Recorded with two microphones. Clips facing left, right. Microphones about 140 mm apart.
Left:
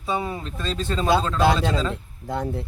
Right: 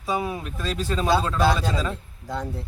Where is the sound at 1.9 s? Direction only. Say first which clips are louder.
Left 2 dB; 20° left (ahead or behind).